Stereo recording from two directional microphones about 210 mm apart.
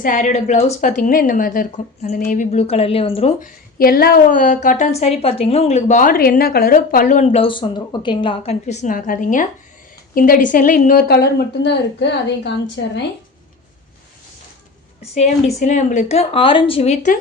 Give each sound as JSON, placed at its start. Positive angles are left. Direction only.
{"t": 0.0, "sound": "a woman's voice", "side_deg": 35}
{"t": 3.8, "sound": "a woman's voice", "side_deg": 45}
{"t": 15.1, "sound": "a woman's voice", "side_deg": 30}